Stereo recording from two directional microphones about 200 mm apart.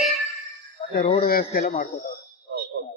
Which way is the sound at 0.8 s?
35° left (ahead or behind).